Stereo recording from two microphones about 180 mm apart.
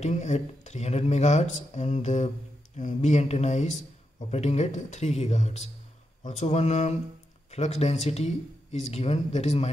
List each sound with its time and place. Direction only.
0.0 s speech: 40° left (ahead or behind)